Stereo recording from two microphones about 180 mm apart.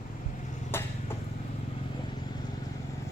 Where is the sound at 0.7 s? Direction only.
15° left (ahead or behind).